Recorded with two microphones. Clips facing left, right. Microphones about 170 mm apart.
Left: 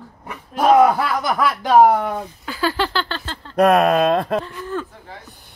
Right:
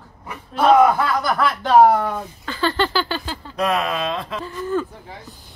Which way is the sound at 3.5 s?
60° left (ahead or behind).